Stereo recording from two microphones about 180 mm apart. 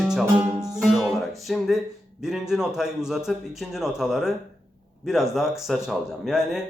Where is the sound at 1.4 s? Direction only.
Centre (ahead or behind).